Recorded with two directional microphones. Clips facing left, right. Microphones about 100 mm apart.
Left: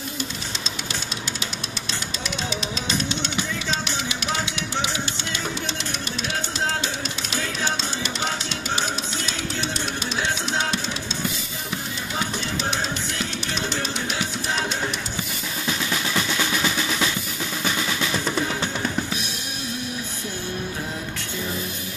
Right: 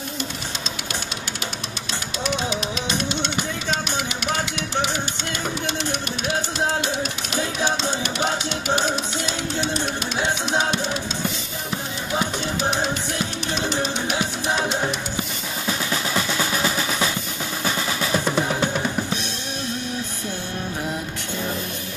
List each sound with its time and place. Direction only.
5.7 s music: 55° right (ahead or behind)
7.3 s music: 15° right (ahead or behind)
8.6 s music: 55° right (ahead or behind)
14.1 s music: 20° right (ahead or behind)
15.9 s percussion: 25° right (ahead or behind)
17.8 s drum: 20° right (ahead or behind)